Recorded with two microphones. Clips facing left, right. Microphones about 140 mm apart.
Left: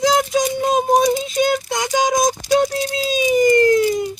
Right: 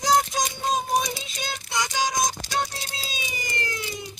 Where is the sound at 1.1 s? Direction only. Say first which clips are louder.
Left 17 dB; 55° left (ahead or behind).